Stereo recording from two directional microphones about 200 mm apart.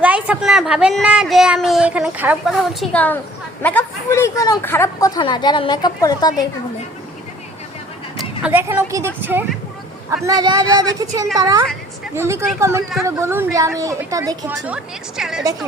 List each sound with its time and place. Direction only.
0.0 s speech: 5° right (ahead or behind); by 6.5 s 20° left (ahead or behind)
8.2 s speech: 5° right (ahead or behind)
15.1 s speech: 5° right (ahead or behind)